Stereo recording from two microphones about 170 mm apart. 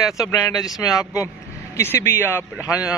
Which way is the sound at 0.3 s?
20° left (ahead or behind).